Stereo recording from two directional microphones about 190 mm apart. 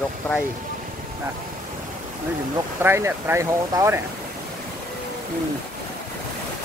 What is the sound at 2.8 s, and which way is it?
Speech, 15° right (ahead or behind).